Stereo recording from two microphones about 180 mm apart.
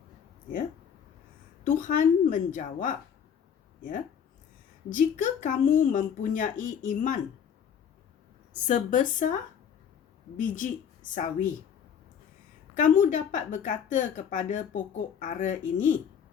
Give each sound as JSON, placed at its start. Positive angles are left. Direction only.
{"t": 1.8, "sound": "speech", "side_deg": 45}
{"t": 4.9, "sound": "speech", "side_deg": 45}
{"t": 8.6, "sound": "speech", "side_deg": 45}
{"t": 12.7, "sound": "speech", "side_deg": 45}